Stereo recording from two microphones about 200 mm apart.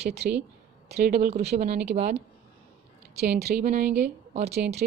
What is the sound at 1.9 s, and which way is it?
Speech, 35° right (ahead or behind).